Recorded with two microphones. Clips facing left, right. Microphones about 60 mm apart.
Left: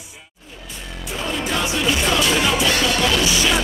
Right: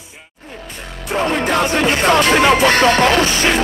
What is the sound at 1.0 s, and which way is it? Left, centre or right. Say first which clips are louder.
Music: right 8 dB; right.